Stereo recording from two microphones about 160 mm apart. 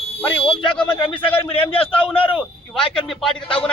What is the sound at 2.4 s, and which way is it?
Speech, centre (ahead or behind).